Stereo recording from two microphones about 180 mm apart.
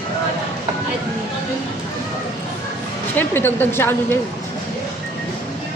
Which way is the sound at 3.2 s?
10° left (ahead or behind).